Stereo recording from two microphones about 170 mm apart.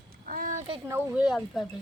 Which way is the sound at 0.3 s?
50° right (ahead or behind).